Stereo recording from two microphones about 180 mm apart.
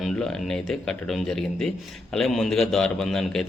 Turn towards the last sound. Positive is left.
turn(degrees=5)  # may be behind; listen again after turning